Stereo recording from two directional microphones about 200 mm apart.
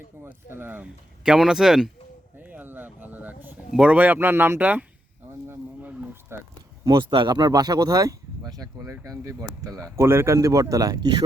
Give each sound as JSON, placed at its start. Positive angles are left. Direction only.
{"t": 0.3, "sound": "speech", "side_deg": -10}
{"t": 5.5, "sound": "a sound", "side_deg": -10}
{"t": 6.8, "sound": "speech", "side_deg": -25}